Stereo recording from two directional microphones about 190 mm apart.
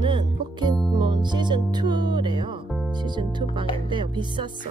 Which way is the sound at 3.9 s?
25° right (ahead or behind).